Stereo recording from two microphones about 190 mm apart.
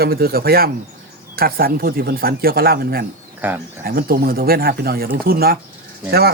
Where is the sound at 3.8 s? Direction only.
50° right (ahead or behind).